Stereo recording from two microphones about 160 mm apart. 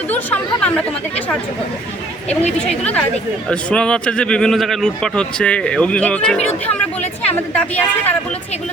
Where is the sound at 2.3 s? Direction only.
40° left (ahead or behind).